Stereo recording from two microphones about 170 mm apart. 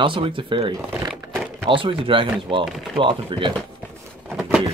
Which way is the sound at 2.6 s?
Centre (ahead or behind).